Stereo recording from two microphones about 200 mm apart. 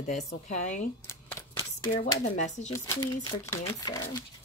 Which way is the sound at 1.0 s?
15° left (ahead or behind).